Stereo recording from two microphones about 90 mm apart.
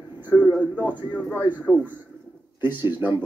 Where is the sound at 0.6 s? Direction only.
20° right (ahead or behind).